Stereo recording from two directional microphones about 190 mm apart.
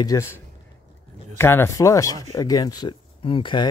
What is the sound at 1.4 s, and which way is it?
Speech, 10° left (ahead or behind).